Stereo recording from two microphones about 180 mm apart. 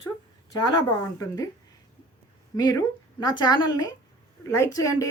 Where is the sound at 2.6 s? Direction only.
20° left (ahead or behind).